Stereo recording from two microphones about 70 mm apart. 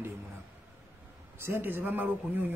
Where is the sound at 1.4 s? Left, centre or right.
Right.